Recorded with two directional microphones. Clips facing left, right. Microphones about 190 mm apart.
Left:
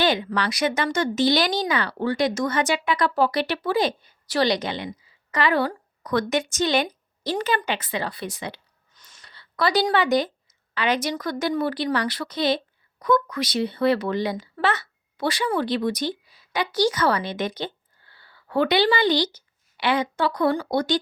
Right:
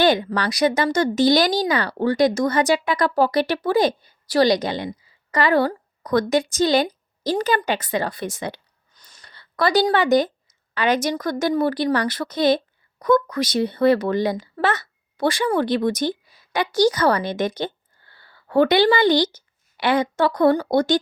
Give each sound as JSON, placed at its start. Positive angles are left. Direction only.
{"t": 0.0, "sound": "a woman's voice", "side_deg": -45}